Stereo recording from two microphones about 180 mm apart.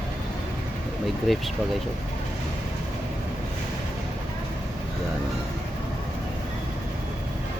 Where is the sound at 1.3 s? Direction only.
Centre (ahead or behind).